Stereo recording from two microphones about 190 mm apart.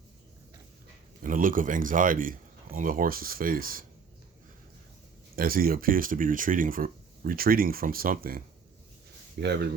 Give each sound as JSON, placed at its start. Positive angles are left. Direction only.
{"t": 1.2, "sound": "speech", "side_deg": -45}
{"t": 5.4, "sound": "speech", "side_deg": -50}
{"t": 9.4, "sound": "a man's voice", "side_deg": -60}